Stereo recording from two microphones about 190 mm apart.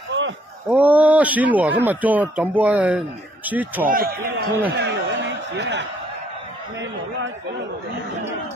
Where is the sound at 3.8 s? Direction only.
50° right (ahead or behind).